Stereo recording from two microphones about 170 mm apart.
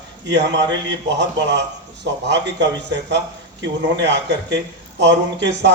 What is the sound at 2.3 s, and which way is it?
A man's voice, 90° right.